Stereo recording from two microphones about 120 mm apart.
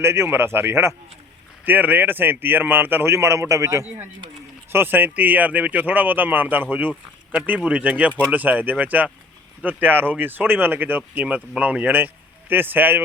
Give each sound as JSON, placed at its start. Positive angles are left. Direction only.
{"t": 0.0, "sound": "a man's voice", "side_deg": -20}